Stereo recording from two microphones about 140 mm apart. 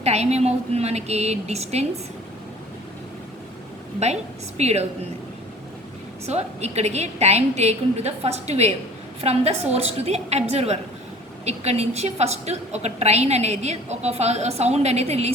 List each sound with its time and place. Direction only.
0.0 s a woman's voice: 50° right (ahead or behind)
4.0 s a woman's voice: 50° right (ahead or behind)
6.2 s a woman's voice: 50° right (ahead or behind)